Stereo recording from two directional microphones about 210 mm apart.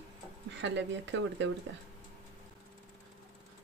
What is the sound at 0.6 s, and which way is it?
Speech, 60° right (ahead or behind).